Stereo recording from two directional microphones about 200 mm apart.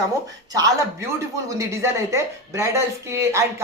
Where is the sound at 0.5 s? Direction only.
20° right (ahead or behind).